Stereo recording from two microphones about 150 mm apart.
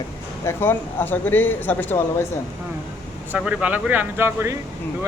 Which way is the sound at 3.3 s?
10° right (ahead or behind).